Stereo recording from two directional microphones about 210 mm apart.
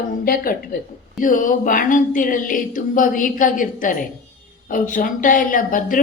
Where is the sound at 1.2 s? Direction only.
40° left (ahead or behind).